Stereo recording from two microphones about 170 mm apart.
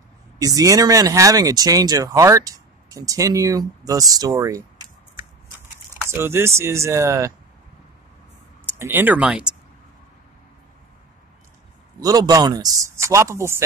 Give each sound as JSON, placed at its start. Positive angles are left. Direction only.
{"t": 0.4, "sound": "speech", "side_deg": -20}
{"t": 5.9, "sound": "speech", "side_deg": -15}
{"t": 8.7, "sound": "speech", "side_deg": -15}
{"t": 12.0, "sound": "speech", "side_deg": -20}